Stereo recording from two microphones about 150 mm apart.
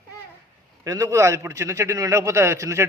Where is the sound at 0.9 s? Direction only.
20° right (ahead or behind).